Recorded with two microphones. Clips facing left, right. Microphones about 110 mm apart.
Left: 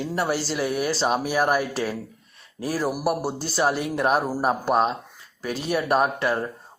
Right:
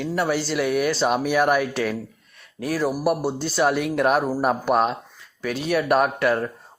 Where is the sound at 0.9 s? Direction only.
Centre (ahead or behind).